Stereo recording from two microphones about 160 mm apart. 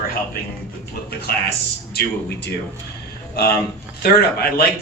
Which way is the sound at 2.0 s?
75° left (ahead or behind).